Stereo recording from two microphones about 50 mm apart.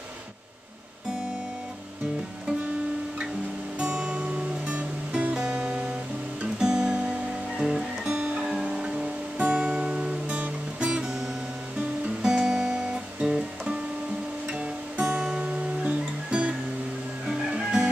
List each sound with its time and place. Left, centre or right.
3.8 s music: centre
4.6 s music: right; by 7.8 s centre
8.0 s music: right
10.2 s guitar: right
10.8 s guitar: centre
17.3 s music: centre